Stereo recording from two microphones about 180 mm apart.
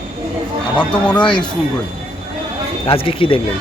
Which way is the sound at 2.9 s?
30° left (ahead or behind).